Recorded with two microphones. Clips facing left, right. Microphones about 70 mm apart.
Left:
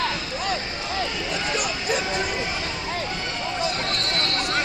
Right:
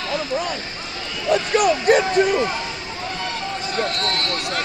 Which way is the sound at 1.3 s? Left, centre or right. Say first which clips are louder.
Right 15 dB; right.